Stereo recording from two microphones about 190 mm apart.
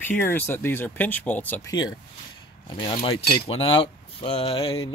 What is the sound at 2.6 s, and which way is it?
Speech, 25° left (ahead or behind).